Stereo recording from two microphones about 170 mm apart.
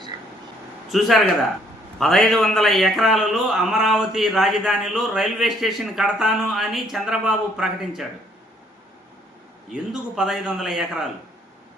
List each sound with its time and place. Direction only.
0.1 s a sound: 20° right (ahead or behind)
0.9 s a man's voice: centre (ahead or behind)
9.9 s a man's voice: 5° right (ahead or behind)